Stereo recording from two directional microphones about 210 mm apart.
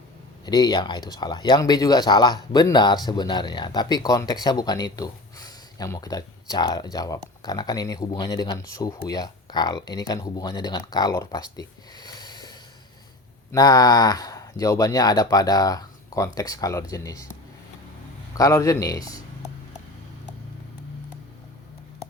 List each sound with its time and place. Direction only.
0.4 s speech: 20° left (ahead or behind)
18.3 s speech: 15° left (ahead or behind)